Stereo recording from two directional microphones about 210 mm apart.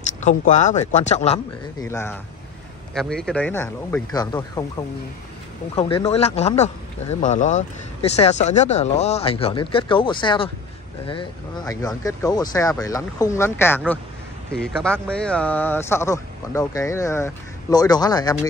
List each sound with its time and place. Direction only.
0.2 s speech: 35° left (ahead or behind)
1.8 s speech: 10° left (ahead or behind)
5.8 s speech: 25° left (ahead or behind)